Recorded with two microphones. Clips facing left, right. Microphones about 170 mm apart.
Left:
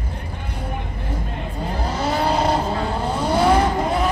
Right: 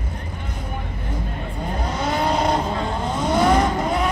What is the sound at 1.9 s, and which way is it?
Vehicle, 5° left (ahead or behind).